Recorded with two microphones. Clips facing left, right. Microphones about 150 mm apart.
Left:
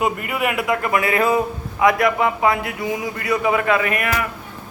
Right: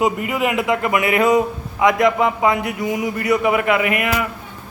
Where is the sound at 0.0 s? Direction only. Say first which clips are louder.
Right 3 dB; 20° right (ahead or behind).